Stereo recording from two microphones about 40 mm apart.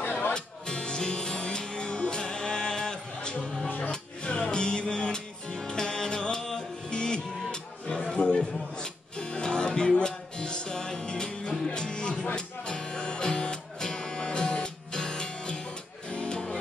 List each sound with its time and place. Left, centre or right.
0.0 s music: left
0.3 s music: left
8.2 s a sound: left
9.2 s music: left